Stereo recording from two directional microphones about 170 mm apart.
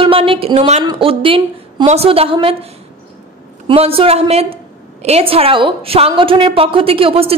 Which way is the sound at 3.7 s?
35° right (ahead or behind).